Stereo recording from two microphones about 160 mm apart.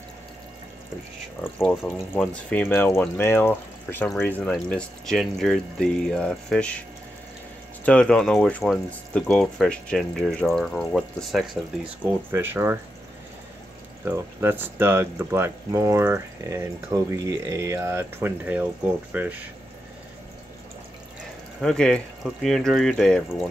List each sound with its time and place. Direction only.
1.6 s speech: centre (ahead or behind)
7.8 s speech: 5° left (ahead or behind)
12.3 s speech: 15° right (ahead or behind)
14.0 s speech: 15° right (ahead or behind)
21.5 s speech: 5° left (ahead or behind)